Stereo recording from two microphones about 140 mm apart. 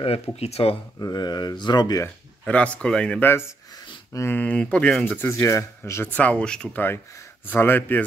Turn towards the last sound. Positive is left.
turn(degrees=15)  # may be behind; listen again after turning